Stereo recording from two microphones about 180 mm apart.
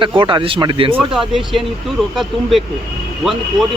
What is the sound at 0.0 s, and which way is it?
Speech, 30° right (ahead or behind).